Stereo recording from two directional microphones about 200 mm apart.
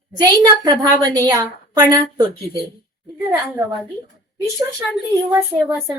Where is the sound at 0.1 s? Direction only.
20° right (ahead or behind).